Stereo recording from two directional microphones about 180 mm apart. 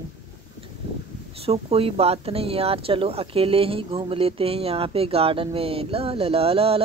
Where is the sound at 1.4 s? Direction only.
30° right (ahead or behind).